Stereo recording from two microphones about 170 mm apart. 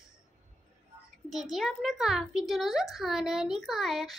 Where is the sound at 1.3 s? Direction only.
Centre (ahead or behind).